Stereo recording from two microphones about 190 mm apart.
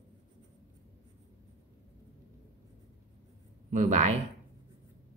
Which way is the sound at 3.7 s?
40° right (ahead or behind).